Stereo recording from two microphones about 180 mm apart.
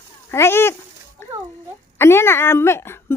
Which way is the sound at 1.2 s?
15° left (ahead or behind).